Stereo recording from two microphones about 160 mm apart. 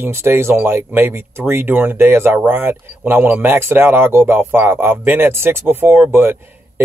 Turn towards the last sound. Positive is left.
turn(degrees=-15)  # may be behind; listen again after turning